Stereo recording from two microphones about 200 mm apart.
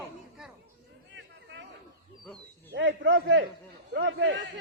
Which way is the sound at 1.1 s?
65° right (ahead or behind).